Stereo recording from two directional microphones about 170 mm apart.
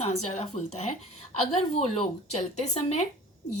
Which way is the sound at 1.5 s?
40° left (ahead or behind).